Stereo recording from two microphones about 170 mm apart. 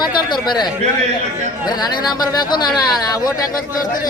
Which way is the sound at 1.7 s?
25° left (ahead or behind).